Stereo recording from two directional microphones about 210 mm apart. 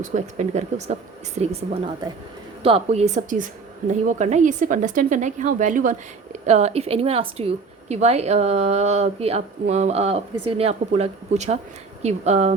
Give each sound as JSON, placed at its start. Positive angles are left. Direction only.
{"t": 0.0, "sound": "a woman's voice", "side_deg": -35}